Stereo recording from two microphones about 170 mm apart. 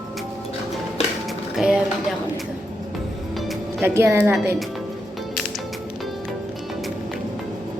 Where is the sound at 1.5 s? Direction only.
5° right (ahead or behind).